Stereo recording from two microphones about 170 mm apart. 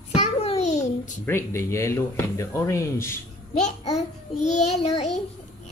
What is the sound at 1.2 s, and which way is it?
Speech, 15° left (ahead or behind).